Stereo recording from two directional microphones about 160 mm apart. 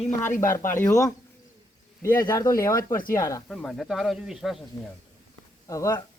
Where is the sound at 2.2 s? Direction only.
20° left (ahead or behind).